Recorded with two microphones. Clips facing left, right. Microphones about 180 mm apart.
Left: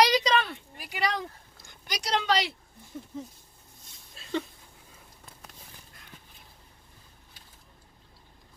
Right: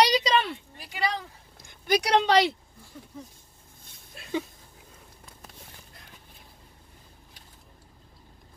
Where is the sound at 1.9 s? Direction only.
60° right (ahead or behind).